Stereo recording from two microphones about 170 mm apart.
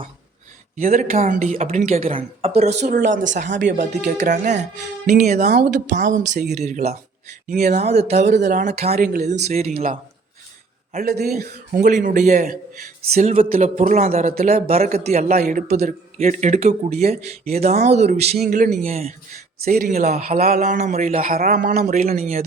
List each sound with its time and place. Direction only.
0.8 s a man's voice: 55° right (ahead or behind)
2.0 s a man's voice: 35° right (ahead or behind)
11.0 s a man's voice: 65° right (ahead or behind); by 15.3 s 40° right (ahead or behind)
15.4 s a man's voice: 55° right (ahead or behind)
16.1 s speech: 40° right (ahead or behind)
19.6 s a man's voice: 60° right (ahead or behind)
19.9 s a man's voice: 45° right (ahead or behind)
21.2 s a man's voice: 55° right (ahead or behind)